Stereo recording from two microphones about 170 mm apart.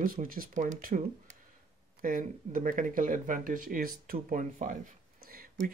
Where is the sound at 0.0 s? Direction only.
55° right (ahead or behind).